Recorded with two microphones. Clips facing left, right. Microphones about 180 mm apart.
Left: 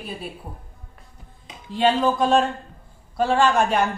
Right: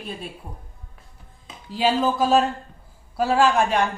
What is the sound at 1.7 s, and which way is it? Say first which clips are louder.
A woman's voice: left 2 dB; 5° right (ahead or behind).